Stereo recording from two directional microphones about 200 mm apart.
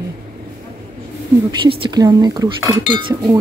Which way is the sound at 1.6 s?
25° right (ahead or behind).